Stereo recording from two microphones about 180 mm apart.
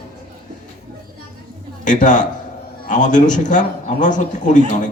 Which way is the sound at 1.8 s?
45° left (ahead or behind).